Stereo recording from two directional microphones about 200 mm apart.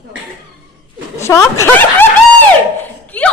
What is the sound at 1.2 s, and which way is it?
Speech, 15° left (ahead or behind).